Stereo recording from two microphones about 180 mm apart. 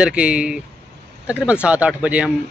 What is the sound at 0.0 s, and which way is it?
Speech, 5° right (ahead or behind).